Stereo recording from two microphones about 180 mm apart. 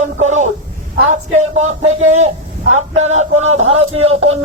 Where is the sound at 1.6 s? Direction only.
40° right (ahead or behind).